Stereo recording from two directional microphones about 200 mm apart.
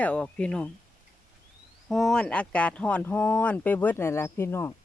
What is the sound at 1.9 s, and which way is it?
Speech, centre (ahead or behind).